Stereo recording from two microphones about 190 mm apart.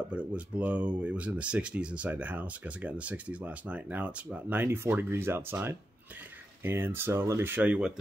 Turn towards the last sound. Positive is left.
turn(degrees=-5)  # may be behind; listen again after turning